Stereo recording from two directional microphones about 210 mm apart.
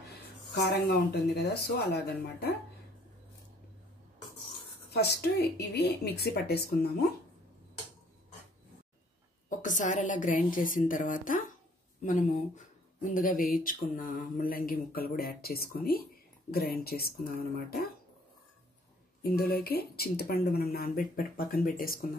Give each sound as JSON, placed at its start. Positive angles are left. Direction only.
{"t": 0.7, "sound": "speech", "side_deg": 50}
{"t": 4.9, "sound": "speech", "side_deg": 50}
{"t": 9.5, "sound": "a woman's voice", "side_deg": 35}
{"t": 19.2, "sound": "speech", "side_deg": 45}